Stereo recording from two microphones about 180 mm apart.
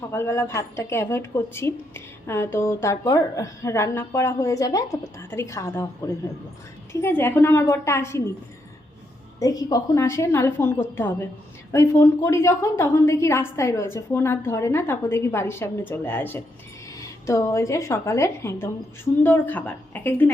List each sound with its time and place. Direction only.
0.1 s a woman's voice: 15° left (ahead or behind)
6.9 s a woman's voice: 10° left (ahead or behind)
9.4 s a woman's voice: 20° left (ahead or behind)